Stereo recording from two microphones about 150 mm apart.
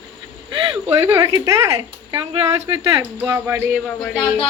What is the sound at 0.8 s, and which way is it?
Speech, 15° right (ahead or behind).